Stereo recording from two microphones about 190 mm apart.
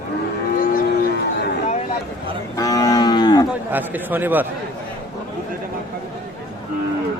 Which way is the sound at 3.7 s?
10° right (ahead or behind).